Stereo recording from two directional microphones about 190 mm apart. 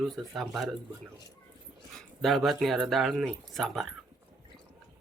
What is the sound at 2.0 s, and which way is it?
Speech, centre (ahead or behind).